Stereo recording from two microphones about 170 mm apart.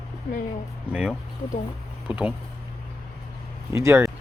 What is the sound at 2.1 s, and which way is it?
Speech, 5° right (ahead or behind).